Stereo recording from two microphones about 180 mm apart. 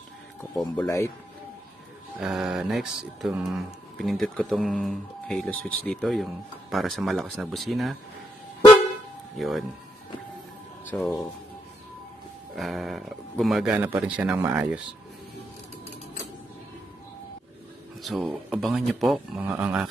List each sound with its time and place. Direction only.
0.8 s speech: 15° left (ahead or behind)
2.1 s speech: centre (ahead or behind)
9.4 s speech: centre (ahead or behind)
10.9 s speech: centre (ahead or behind)
12.5 s speech: centre (ahead or behind)
18.0 s speech: centre (ahead or behind)